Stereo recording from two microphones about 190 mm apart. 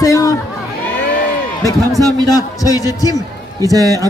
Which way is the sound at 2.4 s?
20° left (ahead or behind).